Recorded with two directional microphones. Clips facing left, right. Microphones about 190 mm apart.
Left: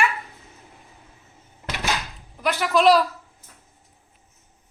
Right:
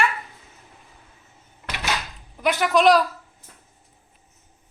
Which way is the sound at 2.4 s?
Centre (ahead or behind).